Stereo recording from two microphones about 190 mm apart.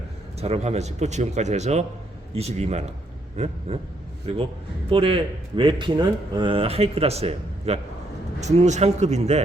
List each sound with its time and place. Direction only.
0.3 s speech: 35° right (ahead or behind)